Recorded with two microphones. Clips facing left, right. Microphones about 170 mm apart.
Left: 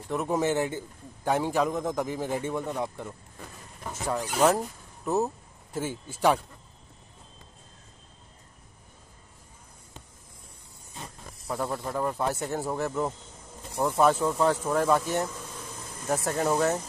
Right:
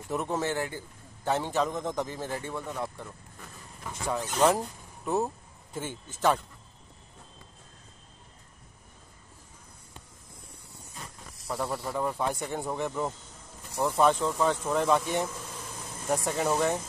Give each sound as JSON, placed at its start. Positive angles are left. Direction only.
{"t": 0.3, "sound": "a man's voice", "side_deg": 15}
{"t": 1.2, "sound": "a man's voice", "side_deg": 10}
{"t": 3.9, "sound": "speech", "side_deg": 5}
{"t": 11.7, "sound": "speech", "side_deg": 0}